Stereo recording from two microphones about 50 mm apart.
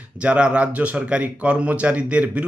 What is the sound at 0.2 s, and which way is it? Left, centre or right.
Speech, right.